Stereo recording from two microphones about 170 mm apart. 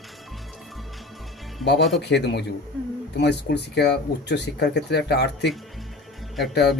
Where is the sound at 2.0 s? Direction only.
80° left.